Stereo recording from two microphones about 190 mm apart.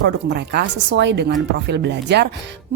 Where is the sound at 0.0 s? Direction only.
60° right (ahead or behind).